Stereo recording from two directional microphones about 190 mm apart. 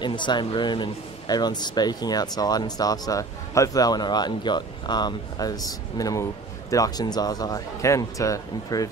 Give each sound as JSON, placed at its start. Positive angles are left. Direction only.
{"t": 0.0, "sound": "speech", "side_deg": 25}